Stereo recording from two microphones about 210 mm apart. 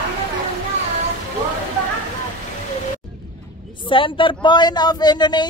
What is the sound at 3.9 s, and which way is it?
Speech, 25° left (ahead or behind).